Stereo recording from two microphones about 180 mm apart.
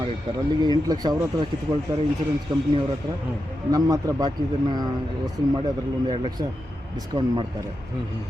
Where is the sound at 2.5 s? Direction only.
20° right (ahead or behind).